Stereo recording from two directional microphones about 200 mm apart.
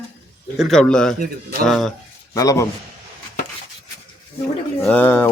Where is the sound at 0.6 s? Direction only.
5° left (ahead or behind).